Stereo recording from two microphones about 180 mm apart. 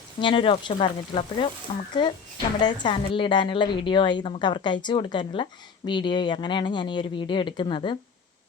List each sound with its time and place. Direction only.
0.2 s a woman's voice: 25° left (ahead or behind)